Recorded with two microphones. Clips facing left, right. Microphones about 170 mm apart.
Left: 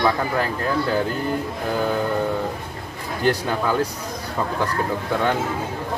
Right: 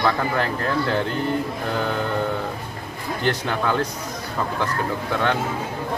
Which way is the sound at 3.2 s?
10° left (ahead or behind).